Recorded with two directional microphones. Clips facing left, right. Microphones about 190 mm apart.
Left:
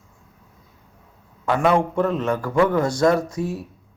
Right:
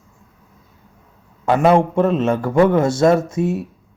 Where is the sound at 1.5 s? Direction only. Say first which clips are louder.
Right 5 dB; 25° right (ahead or behind).